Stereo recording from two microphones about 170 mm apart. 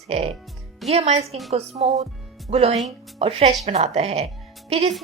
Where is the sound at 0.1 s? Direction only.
35° right (ahead or behind).